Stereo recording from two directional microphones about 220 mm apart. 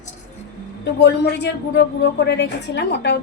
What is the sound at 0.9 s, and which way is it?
A woman's voice, 50° left (ahead or behind).